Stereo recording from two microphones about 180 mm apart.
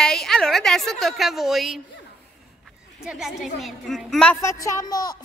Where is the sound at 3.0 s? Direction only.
Centre (ahead or behind).